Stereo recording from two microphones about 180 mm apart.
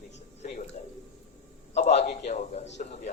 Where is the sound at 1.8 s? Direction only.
40° left (ahead or behind).